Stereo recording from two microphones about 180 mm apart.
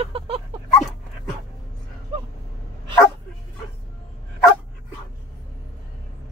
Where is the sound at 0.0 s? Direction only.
30° right (ahead or behind).